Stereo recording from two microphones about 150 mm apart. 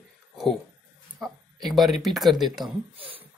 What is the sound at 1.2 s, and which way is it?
Speech, centre (ahead or behind).